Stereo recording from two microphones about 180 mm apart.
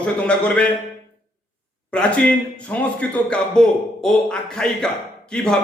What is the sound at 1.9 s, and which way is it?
A man's voice, 5° left (ahead or behind).